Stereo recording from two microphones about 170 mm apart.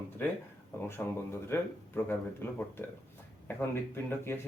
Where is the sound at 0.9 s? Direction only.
15° left (ahead or behind).